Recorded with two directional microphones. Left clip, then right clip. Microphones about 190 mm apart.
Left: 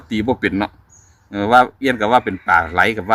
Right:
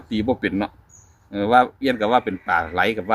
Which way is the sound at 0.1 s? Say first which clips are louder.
Left 4 dB; 30° left (ahead or behind).